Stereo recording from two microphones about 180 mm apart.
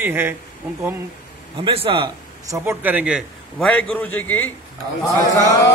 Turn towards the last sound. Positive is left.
turn(degrees=20)  # may be behind; listen again after turning